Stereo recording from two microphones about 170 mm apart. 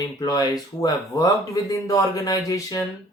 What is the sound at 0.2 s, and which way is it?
Speech, 25° left (ahead or behind).